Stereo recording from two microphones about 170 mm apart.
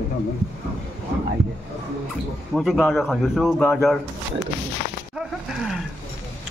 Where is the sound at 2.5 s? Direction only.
Centre (ahead or behind).